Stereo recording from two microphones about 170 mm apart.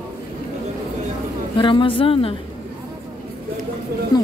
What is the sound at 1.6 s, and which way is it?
Speech, 30° left (ahead or behind).